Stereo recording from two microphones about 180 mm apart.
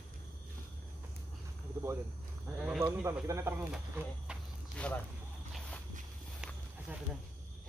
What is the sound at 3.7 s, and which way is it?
Speech, 5° right (ahead or behind).